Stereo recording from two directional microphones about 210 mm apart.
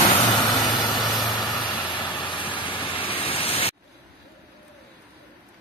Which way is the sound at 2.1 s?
25° left (ahead or behind).